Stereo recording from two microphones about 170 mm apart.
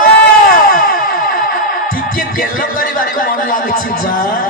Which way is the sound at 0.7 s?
55° left (ahead or behind).